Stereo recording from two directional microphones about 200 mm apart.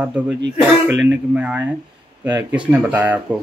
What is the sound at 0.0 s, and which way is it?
A man's voice, 5° right (ahead or behind).